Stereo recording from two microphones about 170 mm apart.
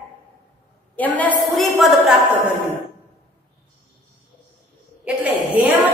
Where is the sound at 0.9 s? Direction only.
10° left (ahead or behind).